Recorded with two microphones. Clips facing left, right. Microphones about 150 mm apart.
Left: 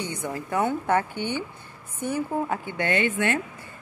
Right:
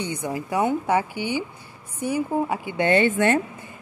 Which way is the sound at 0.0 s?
20° right (ahead or behind).